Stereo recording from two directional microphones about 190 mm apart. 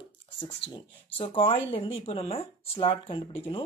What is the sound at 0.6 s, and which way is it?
Speech, 65° left (ahead or behind).